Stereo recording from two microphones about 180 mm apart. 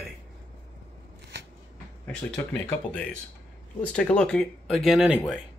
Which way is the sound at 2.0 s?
10° left (ahead or behind).